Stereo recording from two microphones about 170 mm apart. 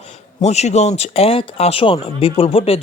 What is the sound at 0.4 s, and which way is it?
A man's voice, 40° left (ahead or behind).